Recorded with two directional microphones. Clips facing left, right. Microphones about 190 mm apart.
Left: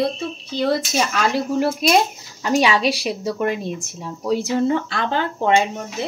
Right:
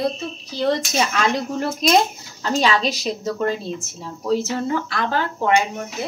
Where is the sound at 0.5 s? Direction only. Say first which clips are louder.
Even; 5° left (ahead or behind).